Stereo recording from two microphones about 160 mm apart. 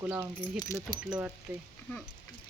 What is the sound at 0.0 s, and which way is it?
Speech, 15° right (ahead or behind).